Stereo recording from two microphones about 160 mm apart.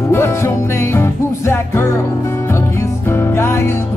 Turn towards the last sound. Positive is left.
turn(degrees=15)  # may be behind; listen again after turning